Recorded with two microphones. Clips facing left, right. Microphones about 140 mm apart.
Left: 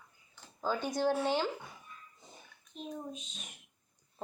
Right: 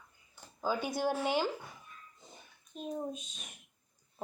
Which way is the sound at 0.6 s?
10° right (ahead or behind).